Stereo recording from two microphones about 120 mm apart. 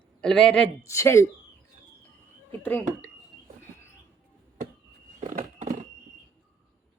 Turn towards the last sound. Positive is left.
turn(degrees=-90)